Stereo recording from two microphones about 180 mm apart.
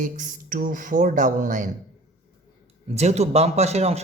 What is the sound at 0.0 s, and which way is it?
Speech, 45° right (ahead or behind).